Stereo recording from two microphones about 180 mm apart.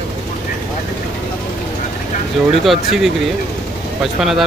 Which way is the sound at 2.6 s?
Centre (ahead or behind).